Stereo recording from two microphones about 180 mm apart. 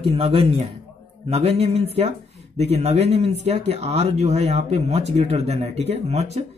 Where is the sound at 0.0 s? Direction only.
30° right (ahead or behind).